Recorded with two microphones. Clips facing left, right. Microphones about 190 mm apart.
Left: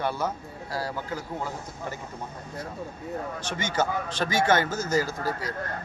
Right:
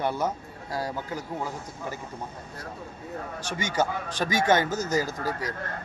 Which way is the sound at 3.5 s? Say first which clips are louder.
Right 1 dB; 15° right (ahead or behind).